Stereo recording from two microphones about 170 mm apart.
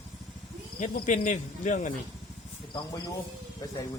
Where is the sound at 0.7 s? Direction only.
45° left (ahead or behind).